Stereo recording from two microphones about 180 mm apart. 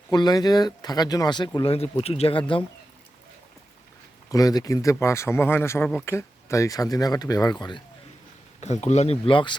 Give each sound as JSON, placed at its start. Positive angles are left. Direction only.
{"t": 0.1, "sound": "speech", "side_deg": 20}
{"t": 4.3, "sound": "speech", "side_deg": 20}
{"t": 8.6, "sound": "speech", "side_deg": 40}